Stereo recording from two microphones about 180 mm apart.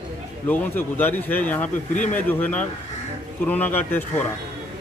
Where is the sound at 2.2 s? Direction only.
10° left (ahead or behind).